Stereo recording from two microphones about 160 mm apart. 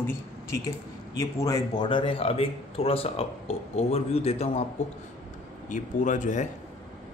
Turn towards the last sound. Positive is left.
turn(degrees=50)  # may be behind; listen again after turning